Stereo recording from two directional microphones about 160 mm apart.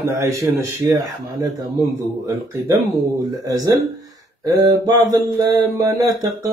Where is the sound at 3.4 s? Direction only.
20° right (ahead or behind).